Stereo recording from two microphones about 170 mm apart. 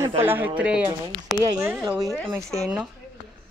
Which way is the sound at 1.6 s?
15° right (ahead or behind).